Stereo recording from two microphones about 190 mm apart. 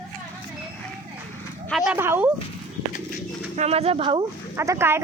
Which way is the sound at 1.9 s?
10° right (ahead or behind).